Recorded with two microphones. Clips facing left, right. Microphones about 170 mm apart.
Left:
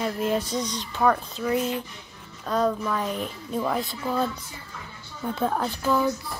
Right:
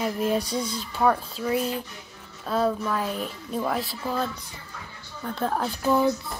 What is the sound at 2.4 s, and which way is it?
A child's voice, 5° right (ahead or behind).